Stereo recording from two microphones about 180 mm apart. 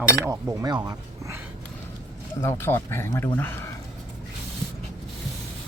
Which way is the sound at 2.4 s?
15° left (ahead or behind).